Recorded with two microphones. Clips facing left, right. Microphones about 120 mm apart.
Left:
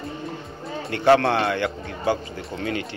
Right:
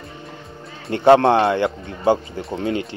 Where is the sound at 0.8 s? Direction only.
25° right (ahead or behind).